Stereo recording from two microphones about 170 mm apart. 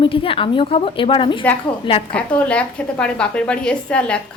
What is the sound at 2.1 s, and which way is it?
A woman's voice, 5° left (ahead or behind).